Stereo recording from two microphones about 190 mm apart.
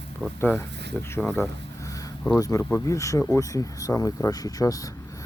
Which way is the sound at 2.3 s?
15° left (ahead or behind).